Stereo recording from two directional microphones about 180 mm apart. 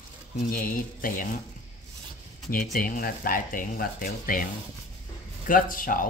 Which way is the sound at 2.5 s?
50° left (ahead or behind).